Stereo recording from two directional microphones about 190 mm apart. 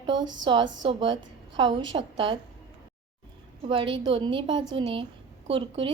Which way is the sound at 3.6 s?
25° right (ahead or behind).